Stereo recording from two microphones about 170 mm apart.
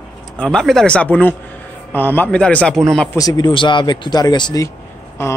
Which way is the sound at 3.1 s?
25° left (ahead or behind).